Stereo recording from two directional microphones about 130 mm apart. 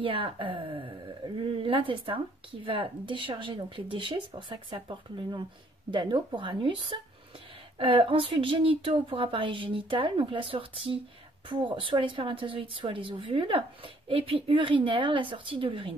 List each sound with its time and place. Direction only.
0.0 s a woman's voice: 40° right (ahead or behind)